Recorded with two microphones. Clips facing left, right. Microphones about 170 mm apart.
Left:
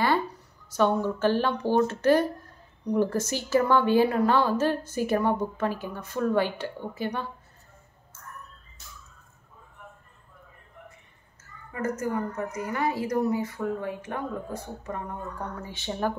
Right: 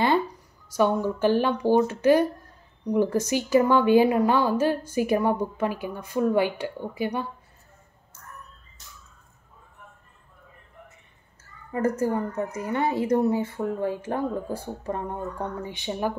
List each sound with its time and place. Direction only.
0.7 s a woman's voice: 10° right (ahead or behind)
11.7 s speech: 30° right (ahead or behind)
15.6 s a woman's voice: 15° right (ahead or behind)